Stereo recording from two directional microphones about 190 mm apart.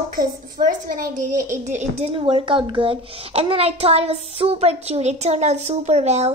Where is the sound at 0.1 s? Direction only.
50° right (ahead or behind).